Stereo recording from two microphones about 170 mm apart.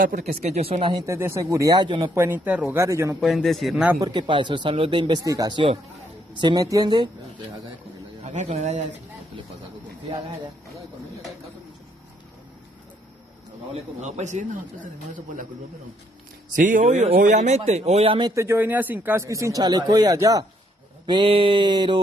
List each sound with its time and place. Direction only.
0.0 s a man's voice: 50° right (ahead or behind); by 1.0 s 35° right (ahead or behind)
1.0 s speech: 15° right (ahead or behind)
2.1 s speech: 15° right (ahead or behind)
3.2 s speech: centre (ahead or behind)
4.0 s speech: 25° right (ahead or behind)
8.3 s a man's voice: 45° right (ahead or behind)
13.7 s a man's voice: 40° right (ahead or behind)
16.5 s speech: 50° right (ahead or behind); by 18.3 s 30° right (ahead or behind)
18.3 s speech: 15° right (ahead or behind)